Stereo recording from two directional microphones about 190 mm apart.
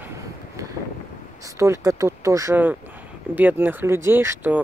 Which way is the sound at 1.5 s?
15° right (ahead or behind).